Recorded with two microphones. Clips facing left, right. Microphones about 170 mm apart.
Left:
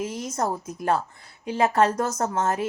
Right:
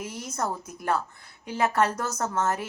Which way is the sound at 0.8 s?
25° left (ahead or behind).